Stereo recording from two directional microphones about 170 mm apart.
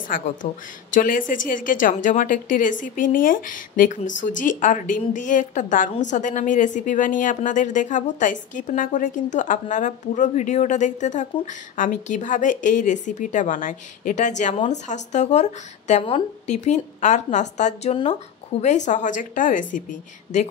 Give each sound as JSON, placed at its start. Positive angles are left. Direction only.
{"t": 0.4, "sound": "a woman's voice", "side_deg": 50}